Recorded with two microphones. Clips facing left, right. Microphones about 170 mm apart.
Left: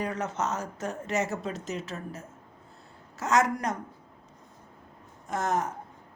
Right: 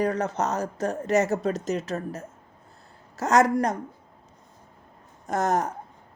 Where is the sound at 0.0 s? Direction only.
35° right (ahead or behind).